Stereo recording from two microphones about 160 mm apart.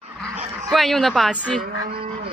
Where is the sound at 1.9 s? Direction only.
35° right (ahead or behind).